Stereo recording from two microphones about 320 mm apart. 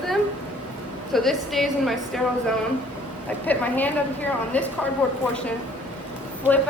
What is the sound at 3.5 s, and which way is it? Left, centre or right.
Speech, centre.